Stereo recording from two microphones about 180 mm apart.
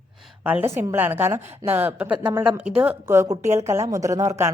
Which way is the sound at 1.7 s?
10° right (ahead or behind).